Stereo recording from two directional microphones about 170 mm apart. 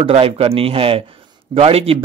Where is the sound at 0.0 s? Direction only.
35° right (ahead or behind).